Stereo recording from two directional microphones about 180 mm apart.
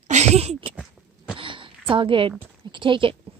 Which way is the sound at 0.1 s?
40° right (ahead or behind).